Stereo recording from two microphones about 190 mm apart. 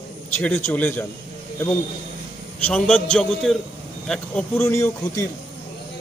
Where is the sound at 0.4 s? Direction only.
10° left (ahead or behind).